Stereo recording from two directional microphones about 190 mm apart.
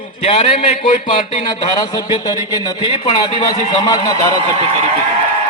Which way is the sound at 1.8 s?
20° left (ahead or behind).